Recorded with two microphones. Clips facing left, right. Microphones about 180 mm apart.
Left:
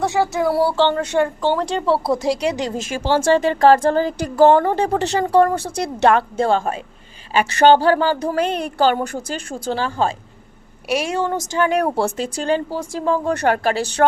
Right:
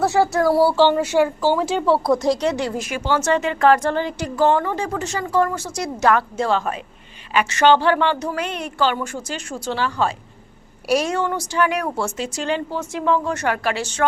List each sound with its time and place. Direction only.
0.0 s a woman's voice: centre (ahead or behind)
2.4 s a woman's voice: 15° left (ahead or behind); by 9.3 s 40° left (ahead or behind)
9.5 s speech: 50° left (ahead or behind)
11.5 s a woman's voice: 30° left (ahead or behind)